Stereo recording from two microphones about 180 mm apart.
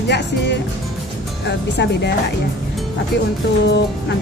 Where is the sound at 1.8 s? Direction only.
70° left (ahead or behind).